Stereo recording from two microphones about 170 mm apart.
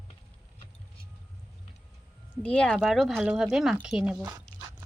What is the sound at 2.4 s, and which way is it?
A woman's voice, 5° left (ahead or behind).